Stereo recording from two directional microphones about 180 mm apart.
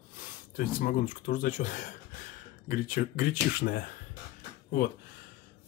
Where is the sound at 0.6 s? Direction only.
50° left (ahead or behind).